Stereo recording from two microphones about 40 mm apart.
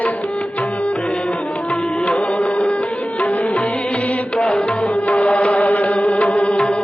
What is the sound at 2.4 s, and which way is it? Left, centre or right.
Music, left.